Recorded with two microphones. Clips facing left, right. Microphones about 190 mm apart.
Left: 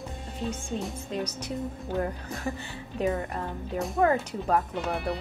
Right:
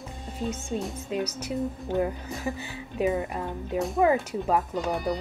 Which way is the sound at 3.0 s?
15° right (ahead or behind).